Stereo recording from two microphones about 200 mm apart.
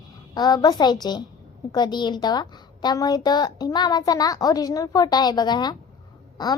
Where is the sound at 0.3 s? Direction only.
20° left (ahead or behind).